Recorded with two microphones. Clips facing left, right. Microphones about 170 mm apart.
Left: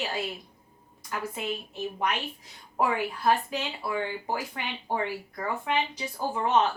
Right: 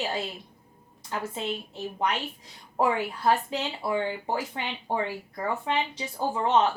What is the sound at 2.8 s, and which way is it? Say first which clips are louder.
Speech: right 2 dB; 25° right (ahead or behind).